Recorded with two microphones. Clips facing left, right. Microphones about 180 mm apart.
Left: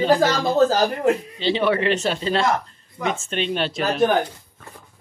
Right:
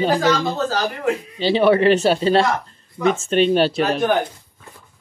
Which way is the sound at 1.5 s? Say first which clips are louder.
Right 5 dB; 35° right (ahead or behind).